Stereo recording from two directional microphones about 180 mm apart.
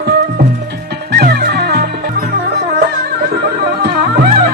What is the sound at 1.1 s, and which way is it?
Music, 60° right (ahead or behind).